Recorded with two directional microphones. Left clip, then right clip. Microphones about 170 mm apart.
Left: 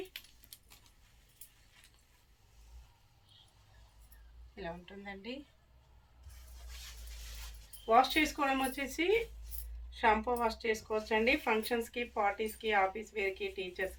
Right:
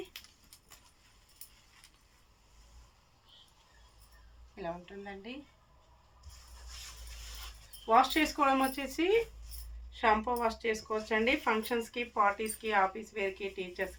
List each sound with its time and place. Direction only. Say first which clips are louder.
4.5 s a woman's voice: right 4 dB; 15° right (ahead or behind)
7.9 s speech: right 1 dB; 25° right (ahead or behind)